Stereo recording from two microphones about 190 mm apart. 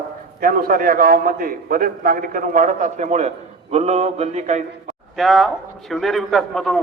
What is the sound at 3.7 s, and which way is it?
Mantra, 35° right (ahead or behind).